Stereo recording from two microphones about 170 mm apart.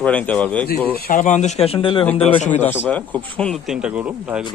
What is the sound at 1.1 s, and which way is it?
Speech, 50° left (ahead or behind).